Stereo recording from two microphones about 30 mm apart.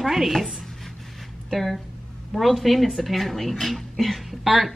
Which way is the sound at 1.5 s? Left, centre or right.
Centre.